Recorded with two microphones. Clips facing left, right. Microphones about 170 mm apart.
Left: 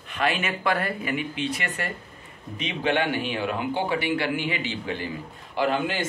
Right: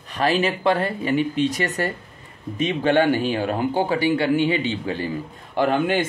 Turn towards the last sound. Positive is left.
turn(degrees=-55)  # may be behind; listen again after turning